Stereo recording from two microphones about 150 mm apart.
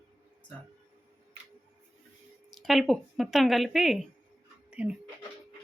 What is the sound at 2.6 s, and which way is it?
Speech, centre (ahead or behind).